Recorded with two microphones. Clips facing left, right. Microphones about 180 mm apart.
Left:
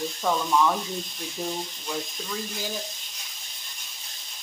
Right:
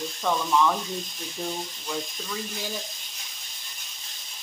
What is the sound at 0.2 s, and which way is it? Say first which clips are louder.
Speech: even; 5° left (ahead or behind).